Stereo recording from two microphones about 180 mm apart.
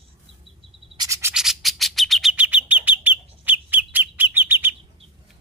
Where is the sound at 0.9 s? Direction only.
20° right (ahead or behind).